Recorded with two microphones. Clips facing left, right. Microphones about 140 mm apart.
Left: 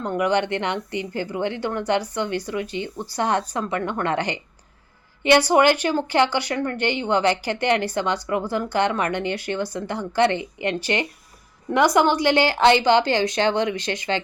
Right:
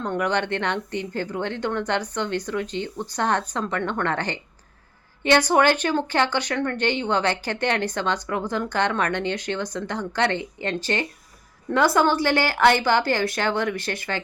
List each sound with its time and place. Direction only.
0.0 s speech: 10° left (ahead or behind)